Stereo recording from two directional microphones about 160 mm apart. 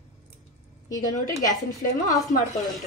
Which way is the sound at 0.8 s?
20° left (ahead or behind).